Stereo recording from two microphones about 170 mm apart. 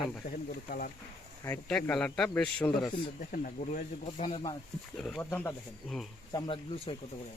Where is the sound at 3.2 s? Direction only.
50° left (ahead or behind).